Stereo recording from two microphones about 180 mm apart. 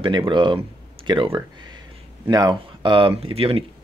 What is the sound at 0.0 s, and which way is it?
Speech, 25° right (ahead or behind).